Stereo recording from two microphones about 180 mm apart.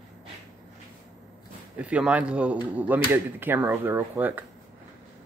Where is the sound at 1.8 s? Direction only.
5° right (ahead or behind).